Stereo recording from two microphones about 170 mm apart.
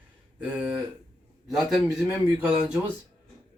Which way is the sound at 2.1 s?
15° right (ahead or behind).